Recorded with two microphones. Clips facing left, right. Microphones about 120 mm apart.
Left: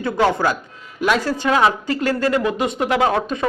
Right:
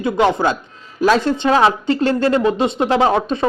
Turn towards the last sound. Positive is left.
turn(degrees=-25)  # may be behind; listen again after turning